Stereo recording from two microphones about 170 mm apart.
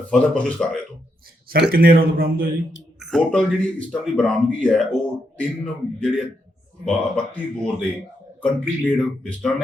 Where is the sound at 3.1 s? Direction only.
5° left (ahead or behind).